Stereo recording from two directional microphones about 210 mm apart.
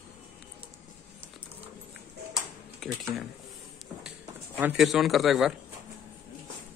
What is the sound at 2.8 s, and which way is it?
Speech, centre (ahead or behind).